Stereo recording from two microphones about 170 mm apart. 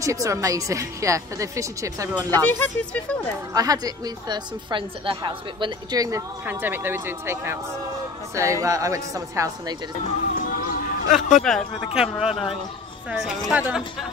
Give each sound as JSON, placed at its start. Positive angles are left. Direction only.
{"t": 0.0, "sound": "a woman's voice", "side_deg": -20}
{"t": 2.3, "sound": "speech", "side_deg": 10}
{"t": 3.5, "sound": "a woman's voice", "side_deg": -20}
{"t": 10.2, "sound": "a sound", "side_deg": 55}
{"t": 11.4, "sound": "speech", "side_deg": 0}
{"t": 13.4, "sound": "speech", "side_deg": -5}